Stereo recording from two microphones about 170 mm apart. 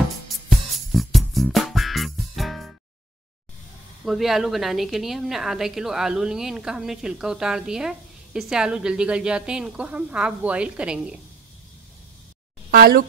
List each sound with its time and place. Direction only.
0.5 s music: centre (ahead or behind)
4.0 s a woman's voice: centre (ahead or behind)
12.7 s speech: 60° right (ahead or behind)